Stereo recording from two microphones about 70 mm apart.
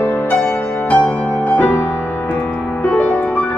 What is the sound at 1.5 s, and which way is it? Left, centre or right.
Music, left.